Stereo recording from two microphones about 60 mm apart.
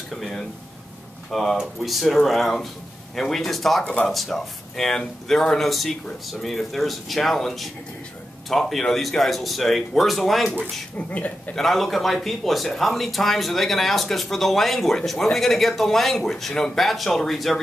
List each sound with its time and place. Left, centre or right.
0.1 s speech: centre
3.8 s speech: left
4.1 s speech: centre
11.0 s speech: left
11.5 s speech: centre